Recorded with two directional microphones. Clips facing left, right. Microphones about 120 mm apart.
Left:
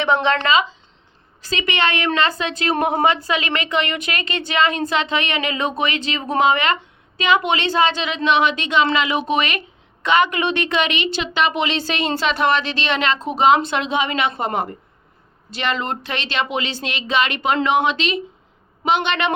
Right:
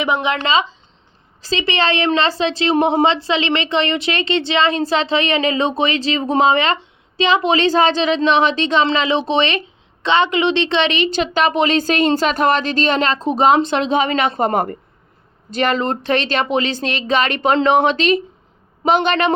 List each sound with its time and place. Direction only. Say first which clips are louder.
0.0 s speech: left 1 dB; 10° right (ahead or behind)
0.4 s speech: even; 30° right (ahead or behind)